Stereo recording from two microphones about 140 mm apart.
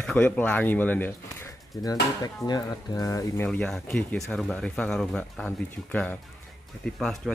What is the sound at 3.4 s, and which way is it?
Speech, 5° left (ahead or behind).